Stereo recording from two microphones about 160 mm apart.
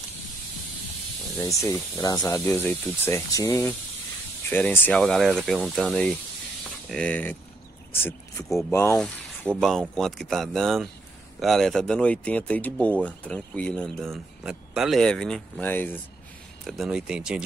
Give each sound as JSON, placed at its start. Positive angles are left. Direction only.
{"t": 1.4, "sound": "speech", "side_deg": 15}
{"t": 8.9, "sound": "speech", "side_deg": 5}
{"t": 16.6, "sound": "speech", "side_deg": 0}